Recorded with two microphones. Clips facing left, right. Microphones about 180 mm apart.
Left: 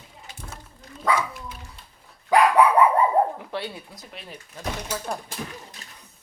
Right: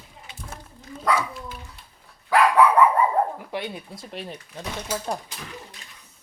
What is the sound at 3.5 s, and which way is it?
Speech, 20° right (ahead or behind).